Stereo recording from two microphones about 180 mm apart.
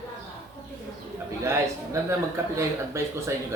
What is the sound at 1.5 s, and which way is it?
A man's voice, 15° right (ahead or behind).